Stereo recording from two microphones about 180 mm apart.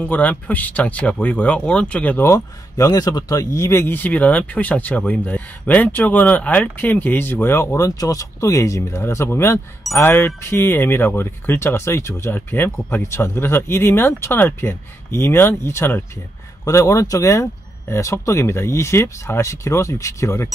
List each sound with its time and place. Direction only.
0.0 s speech: 10° left (ahead or behind)